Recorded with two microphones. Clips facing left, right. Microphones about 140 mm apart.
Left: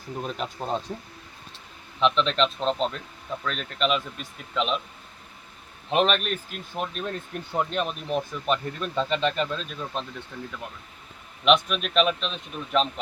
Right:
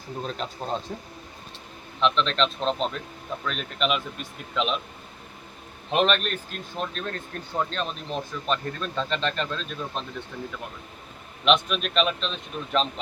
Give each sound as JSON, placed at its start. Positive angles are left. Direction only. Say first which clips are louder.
{"t": 0.2, "sound": "speech", "louder": "left 1 dB", "side_deg": 10}
{"t": 2.0, "sound": "a man's voice", "louder": "left 1 dB", "side_deg": 5}
{"t": 5.9, "sound": "speech", "louder": "even", "side_deg": 5}
{"t": 11.4, "sound": "a man's voice", "louder": "left 1 dB", "side_deg": 5}